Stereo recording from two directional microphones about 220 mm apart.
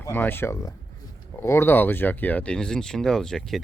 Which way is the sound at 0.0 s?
10° left (ahead or behind).